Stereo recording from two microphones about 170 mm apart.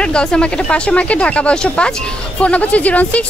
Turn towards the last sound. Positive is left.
turn(degrees=10)  # may be behind; listen again after turning